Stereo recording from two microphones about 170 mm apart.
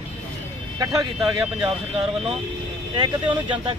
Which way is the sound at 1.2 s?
5° right (ahead or behind).